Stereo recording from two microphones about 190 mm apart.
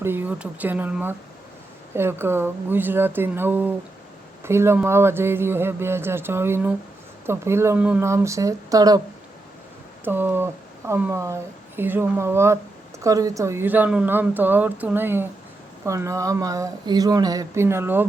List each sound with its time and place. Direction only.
0.0 s speech: 10° right (ahead or behind)
10.0 s speech: 10° right (ahead or behind)